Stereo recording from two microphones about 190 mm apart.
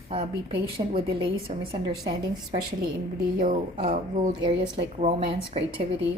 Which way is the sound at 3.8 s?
40° right (ahead or behind).